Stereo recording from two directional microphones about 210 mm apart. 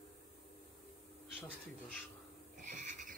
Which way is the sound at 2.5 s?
35° right (ahead or behind).